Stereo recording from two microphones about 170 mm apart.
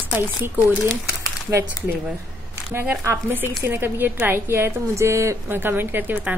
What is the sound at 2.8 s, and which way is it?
A woman's voice, 15° right (ahead or behind).